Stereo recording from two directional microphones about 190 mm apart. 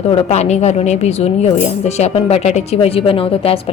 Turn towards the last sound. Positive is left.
turn(degrees=30)  # may be behind; listen again after turning